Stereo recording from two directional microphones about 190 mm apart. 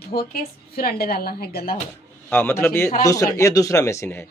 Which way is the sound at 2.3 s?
10° left (ahead or behind).